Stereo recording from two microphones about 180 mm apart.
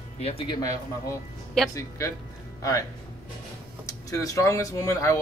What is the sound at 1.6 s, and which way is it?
Speech, 5° left (ahead or behind).